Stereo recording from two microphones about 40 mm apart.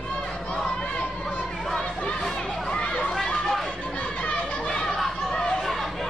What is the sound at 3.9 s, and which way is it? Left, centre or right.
Children playing, left.